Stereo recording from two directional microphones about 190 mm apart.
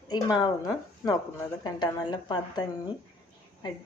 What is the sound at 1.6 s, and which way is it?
Speech, 25° left (ahead or behind).